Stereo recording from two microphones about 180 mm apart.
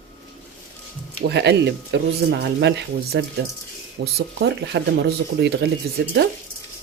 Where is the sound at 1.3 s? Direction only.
70° right (ahead or behind).